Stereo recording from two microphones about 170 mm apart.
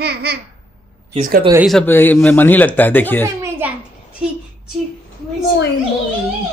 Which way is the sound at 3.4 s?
15° right (ahead or behind).